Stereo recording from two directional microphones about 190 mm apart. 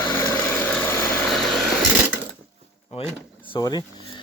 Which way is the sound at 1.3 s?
Centre (ahead or behind).